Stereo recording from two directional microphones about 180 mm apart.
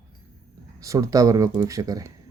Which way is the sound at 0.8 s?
20° right (ahead or behind).